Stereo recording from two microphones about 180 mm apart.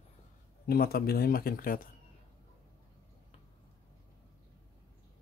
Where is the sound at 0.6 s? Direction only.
60° left (ahead or behind).